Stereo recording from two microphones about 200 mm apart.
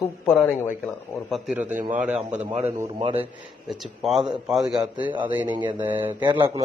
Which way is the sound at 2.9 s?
25° right (ahead or behind).